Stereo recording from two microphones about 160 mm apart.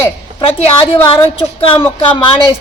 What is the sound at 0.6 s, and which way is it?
Speech, 35° left (ahead or behind).